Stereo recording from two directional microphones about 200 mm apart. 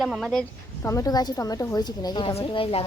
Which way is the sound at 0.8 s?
15° left (ahead or behind).